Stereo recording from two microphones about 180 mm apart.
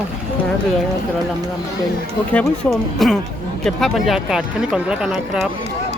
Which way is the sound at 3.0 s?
Centre (ahead or behind).